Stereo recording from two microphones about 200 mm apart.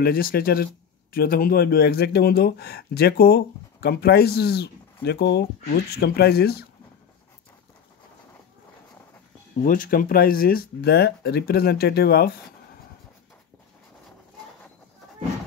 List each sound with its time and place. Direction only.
0.0 s speech: 50° left (ahead or behind)
9.6 s speech: 45° left (ahead or behind)